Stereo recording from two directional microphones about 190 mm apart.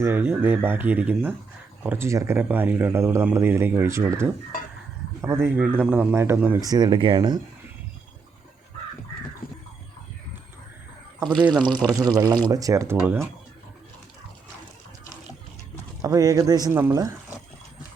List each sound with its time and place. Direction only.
0.0 s speech: 10° right (ahead or behind); by 7.3 s 25° right (ahead or behind)
11.9 s speech: 20° right (ahead or behind)
16.0 s speech: 20° right (ahead or behind)